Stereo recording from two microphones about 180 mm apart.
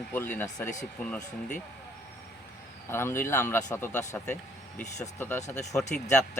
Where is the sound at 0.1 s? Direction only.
10° left (ahead or behind).